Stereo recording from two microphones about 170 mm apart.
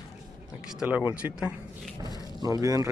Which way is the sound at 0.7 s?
5° right (ahead or behind).